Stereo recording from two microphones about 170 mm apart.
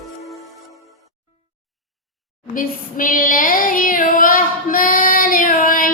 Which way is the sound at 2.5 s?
55° left (ahead or behind).